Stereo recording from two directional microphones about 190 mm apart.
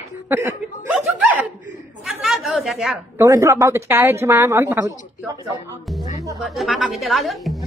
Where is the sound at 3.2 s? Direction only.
15° right (ahead or behind).